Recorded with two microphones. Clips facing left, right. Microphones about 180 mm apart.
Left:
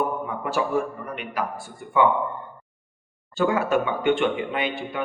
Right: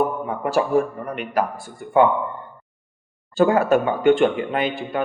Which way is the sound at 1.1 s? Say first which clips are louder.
Right 7 dB; 45° right (ahead or behind).